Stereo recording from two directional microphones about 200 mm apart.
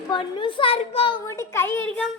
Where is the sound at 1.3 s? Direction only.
15° left (ahead or behind).